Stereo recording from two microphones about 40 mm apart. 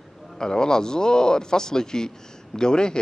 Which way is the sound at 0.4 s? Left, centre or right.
Centre.